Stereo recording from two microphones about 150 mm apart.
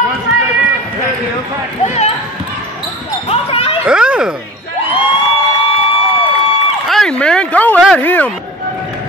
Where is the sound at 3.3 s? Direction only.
40° left (ahead or behind).